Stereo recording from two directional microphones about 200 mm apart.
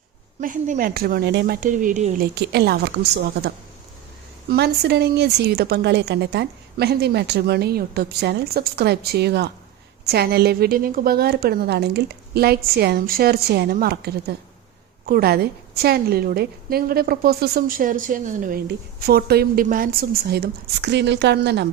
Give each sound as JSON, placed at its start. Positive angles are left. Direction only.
{"t": 0.3, "sound": "a woman's voice", "side_deg": -40}
{"t": 2.3, "sound": "a woman's voice", "side_deg": -55}